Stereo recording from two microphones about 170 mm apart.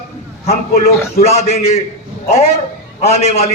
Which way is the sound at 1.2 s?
40° left (ahead or behind).